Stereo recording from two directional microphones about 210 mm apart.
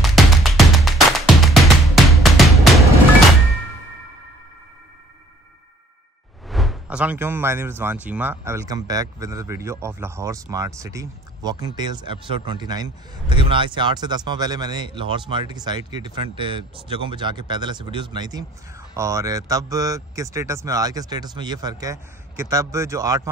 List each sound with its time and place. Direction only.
0.0 s music: centre (ahead or behind)
6.5 s speech: centre (ahead or behind)